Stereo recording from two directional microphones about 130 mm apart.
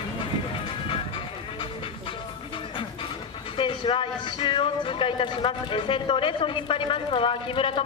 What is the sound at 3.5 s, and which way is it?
Speech, 40° left (ahead or behind).